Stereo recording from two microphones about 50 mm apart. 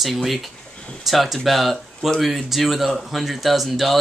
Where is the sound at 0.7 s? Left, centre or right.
Left.